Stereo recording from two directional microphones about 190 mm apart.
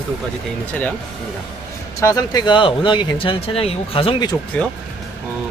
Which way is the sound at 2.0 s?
20° left (ahead or behind).